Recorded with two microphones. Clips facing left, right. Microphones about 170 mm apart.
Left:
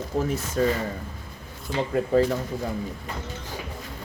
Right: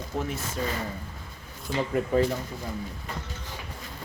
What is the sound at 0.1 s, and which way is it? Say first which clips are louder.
Speech: left 5 dB; 35° left (ahead or behind).